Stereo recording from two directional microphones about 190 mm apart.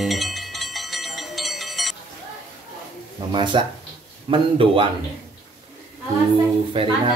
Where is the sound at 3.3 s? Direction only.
25° right (ahead or behind).